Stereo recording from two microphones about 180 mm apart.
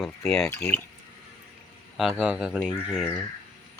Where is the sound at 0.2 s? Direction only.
5° left (ahead or behind).